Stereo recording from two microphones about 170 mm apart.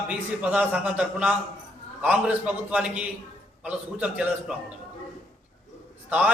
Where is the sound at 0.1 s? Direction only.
5° right (ahead or behind).